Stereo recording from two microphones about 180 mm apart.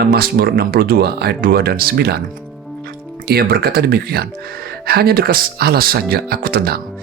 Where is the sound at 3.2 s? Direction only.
60° right (ahead or behind).